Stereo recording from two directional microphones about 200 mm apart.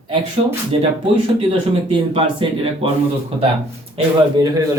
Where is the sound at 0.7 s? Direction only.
30° right (ahead or behind).